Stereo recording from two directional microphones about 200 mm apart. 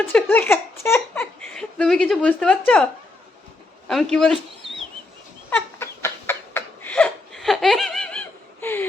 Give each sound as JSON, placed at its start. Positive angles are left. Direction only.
{"t": 0.0, "sound": "speech", "side_deg": 10}
{"t": 3.8, "sound": "speech", "side_deg": 0}
{"t": 5.5, "sound": "a sound", "side_deg": 10}
{"t": 8.6, "sound": "whimper", "side_deg": 10}